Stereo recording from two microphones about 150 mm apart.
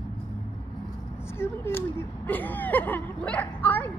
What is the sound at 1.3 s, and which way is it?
A woman's voice, 15° left (ahead or behind).